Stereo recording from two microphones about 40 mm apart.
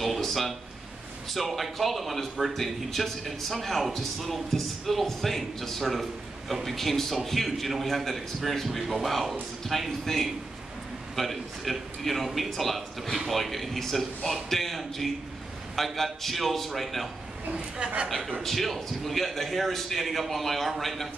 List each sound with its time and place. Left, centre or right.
0.0 s a sound: centre
1.3 s a man's voice: centre
17.5 s a woman's voice: right
18.4 s a man's voice: centre